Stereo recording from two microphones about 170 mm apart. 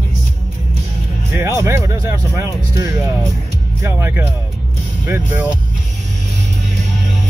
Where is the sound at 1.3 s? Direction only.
15° right (ahead or behind).